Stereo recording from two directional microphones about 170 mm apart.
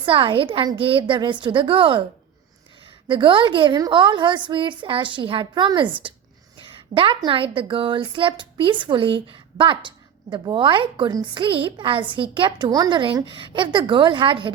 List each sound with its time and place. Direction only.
0.0 s a woman's voice: 30° right (ahead or behind)
3.1 s a woman's voice: 30° right (ahead or behind)